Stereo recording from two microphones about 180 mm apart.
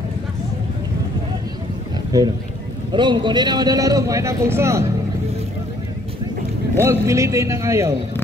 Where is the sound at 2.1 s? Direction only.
20° right (ahead or behind).